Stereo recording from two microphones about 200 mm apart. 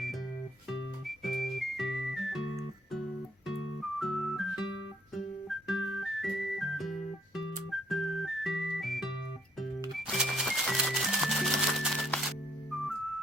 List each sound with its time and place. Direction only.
1.0 s music: centre (ahead or behind)
3.9 s music: centre (ahead or behind)
5.7 s music: 90° left
6.0 s music: centre (ahead or behind)